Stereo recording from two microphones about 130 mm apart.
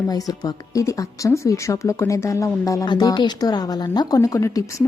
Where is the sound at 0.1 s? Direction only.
30° left (ahead or behind).